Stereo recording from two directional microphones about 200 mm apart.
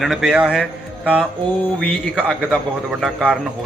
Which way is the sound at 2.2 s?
Centre (ahead or behind).